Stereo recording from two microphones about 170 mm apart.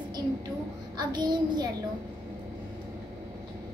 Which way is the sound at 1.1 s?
25° right (ahead or behind).